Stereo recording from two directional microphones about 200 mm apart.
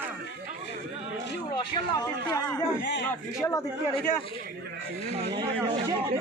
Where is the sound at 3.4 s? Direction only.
15° left (ahead or behind).